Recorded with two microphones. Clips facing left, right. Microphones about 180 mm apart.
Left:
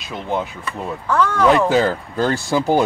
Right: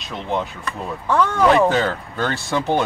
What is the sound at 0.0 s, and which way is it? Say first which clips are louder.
Speech: left 1 dB; 5° left (ahead or behind).